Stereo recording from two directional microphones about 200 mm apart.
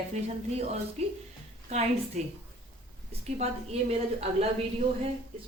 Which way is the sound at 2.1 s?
35° right (ahead or behind).